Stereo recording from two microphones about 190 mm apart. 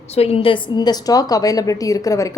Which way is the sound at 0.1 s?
30° left (ahead or behind).